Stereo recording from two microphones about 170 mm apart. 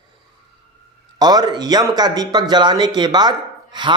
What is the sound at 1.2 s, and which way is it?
Speech, 25° right (ahead or behind).